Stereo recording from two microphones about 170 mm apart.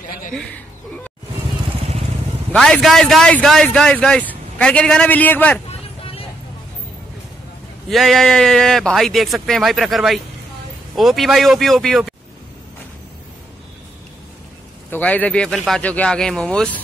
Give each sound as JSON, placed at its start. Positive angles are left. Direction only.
{"t": 2.5, "sound": "a man's voice", "side_deg": 5}
{"t": 5.7, "sound": "vehicle", "side_deg": 35}
{"t": 7.9, "sound": "a man's voice", "side_deg": 0}
{"t": 14.9, "sound": "a man's voice", "side_deg": 10}